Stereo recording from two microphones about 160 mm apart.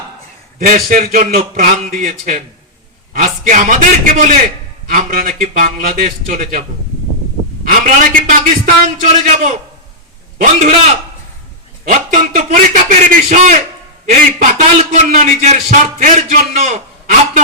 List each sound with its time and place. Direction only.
0.6 s a man's voice: 60° right (ahead or behind)
7.7 s a man's voice: 55° right (ahead or behind)